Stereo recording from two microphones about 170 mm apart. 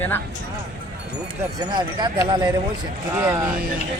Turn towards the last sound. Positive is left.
turn(degrees=-15)  # may be behind; listen again after turning